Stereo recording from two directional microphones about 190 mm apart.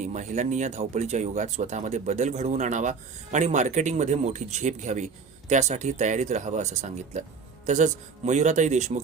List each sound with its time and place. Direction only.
0.0 s speech: 40° right (ahead or behind)